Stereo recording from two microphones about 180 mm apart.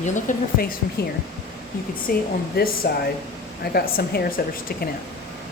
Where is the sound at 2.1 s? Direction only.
50° left (ahead or behind).